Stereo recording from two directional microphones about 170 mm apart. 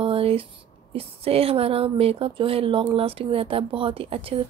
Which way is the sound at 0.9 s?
35° right (ahead or behind).